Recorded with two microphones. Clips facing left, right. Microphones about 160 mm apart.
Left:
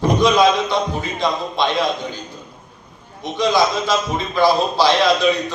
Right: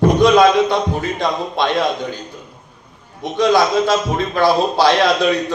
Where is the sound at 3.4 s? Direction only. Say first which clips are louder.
Right 3 dB; 55° right (ahead or behind).